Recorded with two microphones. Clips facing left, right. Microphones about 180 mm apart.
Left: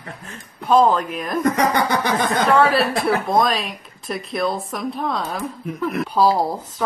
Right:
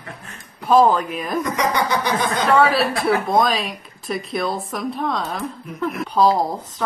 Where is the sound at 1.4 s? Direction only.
50° left (ahead or behind).